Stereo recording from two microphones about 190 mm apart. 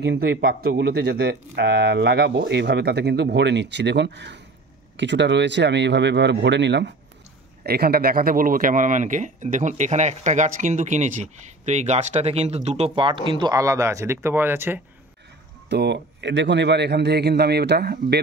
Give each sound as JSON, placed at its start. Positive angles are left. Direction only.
{"t": 0.0, "sound": "speech", "side_deg": -65}
{"t": 7.6, "sound": "speech", "side_deg": -55}
{"t": 15.7, "sound": "speech", "side_deg": -65}